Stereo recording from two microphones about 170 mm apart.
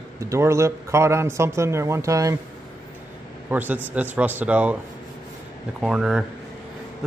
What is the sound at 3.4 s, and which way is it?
Speech, 10° right (ahead or behind).